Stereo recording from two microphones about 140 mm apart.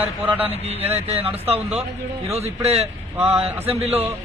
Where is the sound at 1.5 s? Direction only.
10° right (ahead or behind).